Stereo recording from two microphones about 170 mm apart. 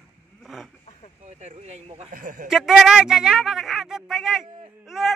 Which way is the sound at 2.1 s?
50° right (ahead or behind).